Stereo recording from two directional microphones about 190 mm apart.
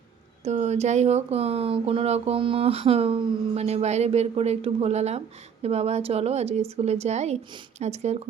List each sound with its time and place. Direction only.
0.4 s speech: 35° right (ahead or behind)